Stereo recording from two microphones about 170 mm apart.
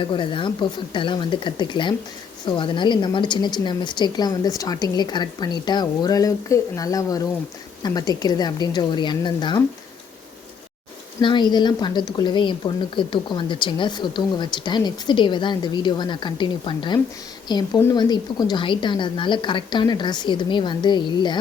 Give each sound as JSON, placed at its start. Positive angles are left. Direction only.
{"t": 0.0, "sound": "a woman's voice", "side_deg": 30}
{"t": 11.2, "sound": "a woman's voice", "side_deg": 25}